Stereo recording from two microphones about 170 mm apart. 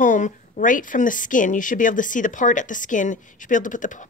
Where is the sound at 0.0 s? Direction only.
50° left (ahead or behind).